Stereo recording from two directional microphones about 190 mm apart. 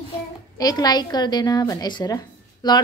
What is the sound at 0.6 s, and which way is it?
Speech, 20° left (ahead or behind).